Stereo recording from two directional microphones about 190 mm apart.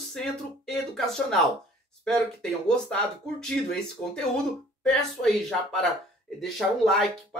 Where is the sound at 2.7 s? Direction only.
5° left (ahead or behind).